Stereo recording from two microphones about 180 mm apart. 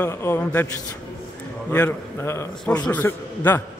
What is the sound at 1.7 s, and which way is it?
A man's voice, 10° left (ahead or behind).